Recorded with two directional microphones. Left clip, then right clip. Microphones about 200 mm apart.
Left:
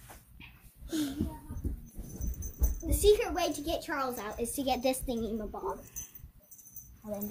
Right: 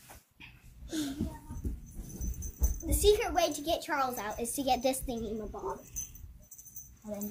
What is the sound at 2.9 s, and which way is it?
A child's voice, 25° right (ahead or behind).